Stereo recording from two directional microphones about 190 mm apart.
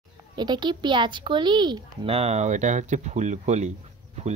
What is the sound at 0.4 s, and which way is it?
A woman's voice, 25° right (ahead or behind).